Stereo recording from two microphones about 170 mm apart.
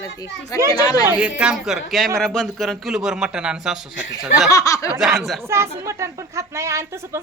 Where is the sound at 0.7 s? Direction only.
25° left (ahead or behind).